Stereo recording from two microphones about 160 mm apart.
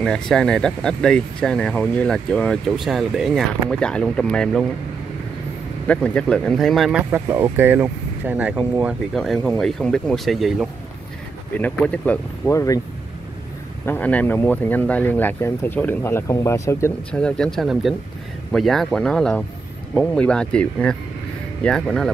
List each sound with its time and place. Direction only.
0.0 s speech: 5° left (ahead or behind)
5.9 s speech: 10° left (ahead or behind)
7.1 s speech: 15° right (ahead or behind); by 12.5 s 10° left (ahead or behind)
12.5 s speech: 20° left (ahead or behind)
13.8 s speech: 10° left (ahead or behind)
17.1 s speech: 5° left (ahead or behind)